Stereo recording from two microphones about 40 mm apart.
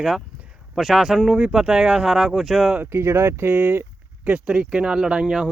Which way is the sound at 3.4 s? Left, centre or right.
Right.